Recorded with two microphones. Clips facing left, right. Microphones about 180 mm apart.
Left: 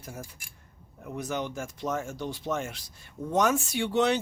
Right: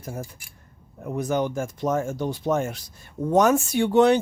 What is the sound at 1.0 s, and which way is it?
Speech, 45° right (ahead or behind).